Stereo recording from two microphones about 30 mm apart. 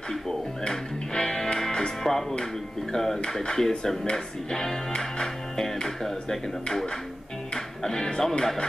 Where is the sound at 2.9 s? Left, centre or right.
Centre.